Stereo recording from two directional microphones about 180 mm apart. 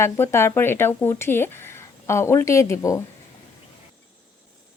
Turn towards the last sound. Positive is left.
turn(degrees=15)  # may be behind; listen again after turning